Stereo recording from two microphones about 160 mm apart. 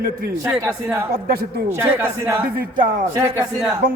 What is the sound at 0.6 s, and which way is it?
Speech, 15° right (ahead or behind).